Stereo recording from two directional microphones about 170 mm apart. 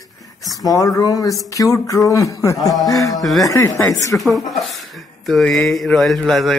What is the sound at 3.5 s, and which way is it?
Speech, 20° left (ahead or behind).